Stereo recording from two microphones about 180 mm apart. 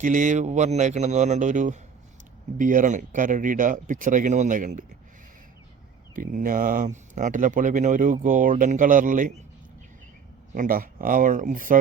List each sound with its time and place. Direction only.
0.0 s speech: 45° right (ahead or behind)
6.1 s speech: 50° right (ahead or behind)
10.5 s speech: 50° right (ahead or behind)